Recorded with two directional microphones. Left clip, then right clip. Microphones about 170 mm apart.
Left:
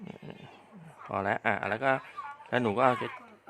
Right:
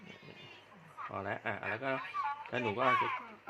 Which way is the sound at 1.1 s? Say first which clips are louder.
Left 10 dB; 40° left (ahead or behind).